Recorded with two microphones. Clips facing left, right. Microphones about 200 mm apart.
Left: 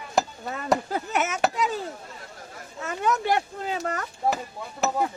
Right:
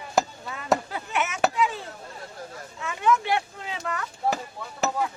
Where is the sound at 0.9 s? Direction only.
40° left (ahead or behind).